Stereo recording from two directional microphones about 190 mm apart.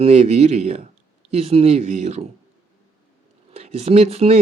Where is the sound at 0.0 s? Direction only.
35° right (ahead or behind).